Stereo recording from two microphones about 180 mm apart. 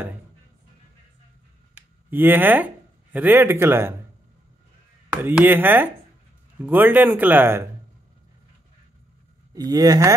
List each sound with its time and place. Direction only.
2.0 s speech: 10° right (ahead or behind)
5.1 s speech: 10° right (ahead or behind)
9.5 s speech: 20° right (ahead or behind)